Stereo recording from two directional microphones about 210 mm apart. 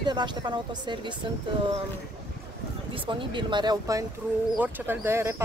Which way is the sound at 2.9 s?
25° right (ahead or behind).